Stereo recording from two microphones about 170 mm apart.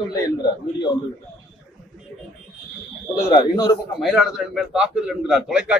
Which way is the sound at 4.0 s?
Centre (ahead or behind).